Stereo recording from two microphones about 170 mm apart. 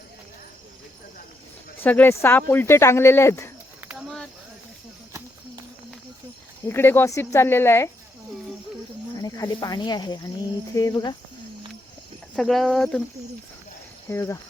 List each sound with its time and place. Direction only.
1.8 s speech: 10° left (ahead or behind)
3.8 s a sound: 5° right (ahead or behind)
6.7 s speech: 15° left (ahead or behind)
9.1 s speech: 20° left (ahead or behind)
12.4 s speech: centre (ahead or behind)
14.1 s speech: 15° left (ahead or behind)